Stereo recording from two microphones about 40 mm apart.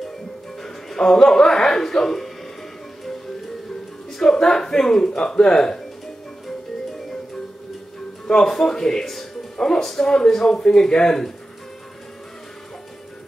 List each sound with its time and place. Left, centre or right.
0.6 s a man's voice: centre
4.2 s speech: centre
8.3 s speech: centre